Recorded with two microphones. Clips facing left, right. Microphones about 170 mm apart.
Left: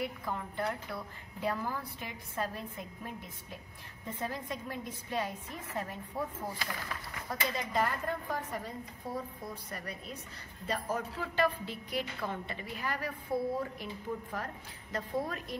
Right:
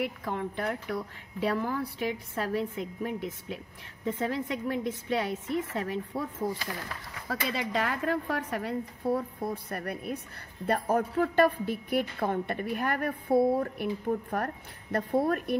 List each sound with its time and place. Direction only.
0.0 s a woman's voice: 70° right (ahead or behind)
7.2 s a woman's voice: 80° right; by 15.5 s 60° right (ahead or behind)